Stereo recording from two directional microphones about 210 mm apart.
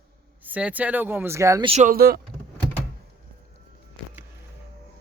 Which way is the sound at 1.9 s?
45° right (ahead or behind).